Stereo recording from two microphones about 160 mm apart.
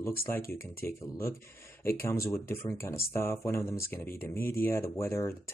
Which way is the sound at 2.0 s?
15° left (ahead or behind).